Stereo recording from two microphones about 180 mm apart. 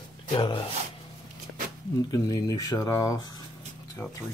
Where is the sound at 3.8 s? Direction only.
15° left (ahead or behind).